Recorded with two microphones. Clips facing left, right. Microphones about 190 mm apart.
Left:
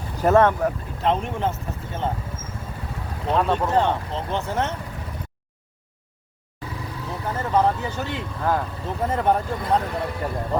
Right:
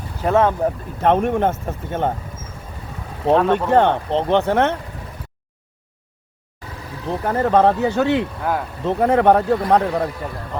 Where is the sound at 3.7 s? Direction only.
65° right (ahead or behind).